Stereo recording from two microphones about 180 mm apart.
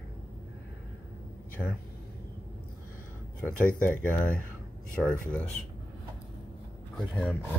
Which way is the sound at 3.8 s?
5° left (ahead or behind).